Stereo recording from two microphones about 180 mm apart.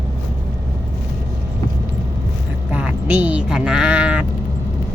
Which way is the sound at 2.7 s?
10° right (ahead or behind).